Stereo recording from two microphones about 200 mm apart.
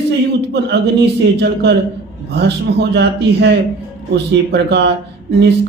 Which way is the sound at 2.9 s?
55° right (ahead or behind).